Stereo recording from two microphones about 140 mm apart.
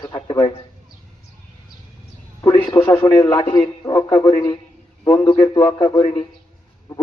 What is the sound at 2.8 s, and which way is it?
A man's voice, 15° left (ahead or behind).